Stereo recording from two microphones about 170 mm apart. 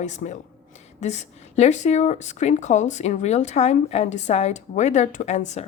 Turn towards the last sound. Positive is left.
turn(degrees=45)  # may be behind; listen again after turning